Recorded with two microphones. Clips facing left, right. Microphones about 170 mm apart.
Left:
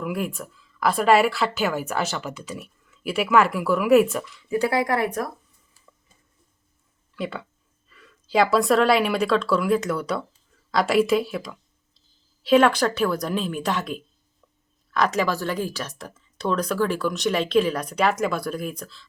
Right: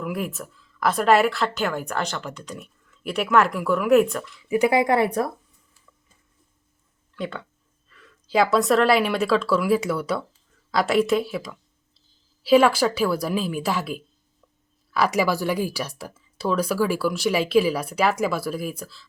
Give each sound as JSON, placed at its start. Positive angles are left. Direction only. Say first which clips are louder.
{"t": 0.0, "sound": "a woman's voice", "louder": "left 1 dB", "side_deg": 0}
{"t": 4.4, "sound": "speech", "louder": "right 3 dB", "side_deg": -15}
{"t": 7.2, "sound": "a woman's voice", "louder": "left 1 dB", "side_deg": 5}